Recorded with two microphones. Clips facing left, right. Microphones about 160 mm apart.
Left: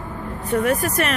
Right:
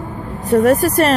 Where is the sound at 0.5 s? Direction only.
40° right (ahead or behind).